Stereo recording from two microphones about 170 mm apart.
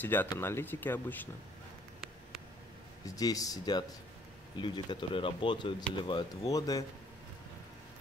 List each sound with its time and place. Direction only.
0.0 s speech: 10° left (ahead or behind)
3.2 s speech: 20° left (ahead or behind)